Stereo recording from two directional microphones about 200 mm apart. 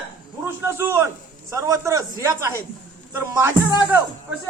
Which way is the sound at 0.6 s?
10° right (ahead or behind).